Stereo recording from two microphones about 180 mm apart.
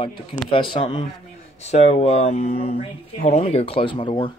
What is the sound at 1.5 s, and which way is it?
Speech, 35° left (ahead or behind).